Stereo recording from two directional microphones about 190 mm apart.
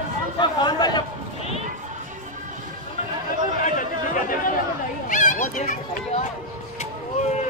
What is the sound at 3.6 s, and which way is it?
Chatter, 45° left (ahead or behind).